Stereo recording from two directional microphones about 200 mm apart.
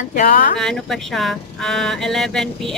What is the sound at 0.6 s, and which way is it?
Speech, centre (ahead or behind).